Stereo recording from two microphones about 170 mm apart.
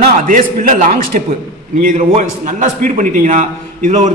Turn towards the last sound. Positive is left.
turn(degrees=-45)  # may be behind; listen again after turning